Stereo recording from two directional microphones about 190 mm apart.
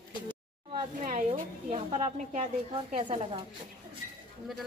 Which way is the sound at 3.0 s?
25° right (ahead or behind).